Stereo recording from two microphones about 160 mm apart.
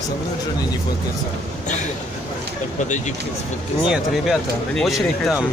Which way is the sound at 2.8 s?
50° left (ahead or behind).